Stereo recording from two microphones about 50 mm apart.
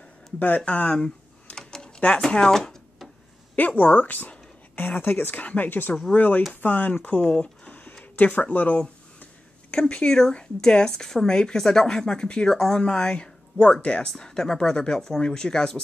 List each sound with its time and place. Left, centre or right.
0.4 s speech: left
0.9 s computer keyboard: centre
2.0 s speech: left
3.5 s speech: left
5.4 s speech: left
5.7 s speech: left
9.8 s a woman's voice: centre